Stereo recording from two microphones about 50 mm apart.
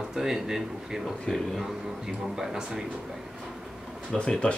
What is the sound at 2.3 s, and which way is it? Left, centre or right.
Speech, centre.